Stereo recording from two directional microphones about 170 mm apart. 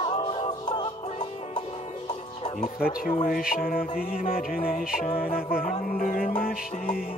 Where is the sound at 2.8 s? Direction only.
55° left (ahead or behind).